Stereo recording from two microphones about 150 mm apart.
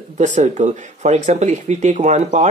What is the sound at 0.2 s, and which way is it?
Speech, 55° right (ahead or behind).